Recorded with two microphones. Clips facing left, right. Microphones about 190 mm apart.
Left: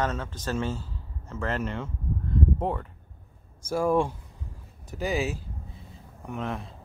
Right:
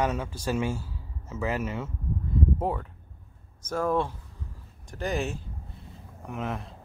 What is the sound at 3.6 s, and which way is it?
Speech, 10° left (ahead or behind).